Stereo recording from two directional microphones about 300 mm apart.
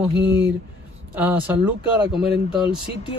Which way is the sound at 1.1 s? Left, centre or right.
Centre.